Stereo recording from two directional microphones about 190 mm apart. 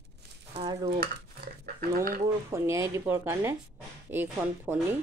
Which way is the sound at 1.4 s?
50° right (ahead or behind).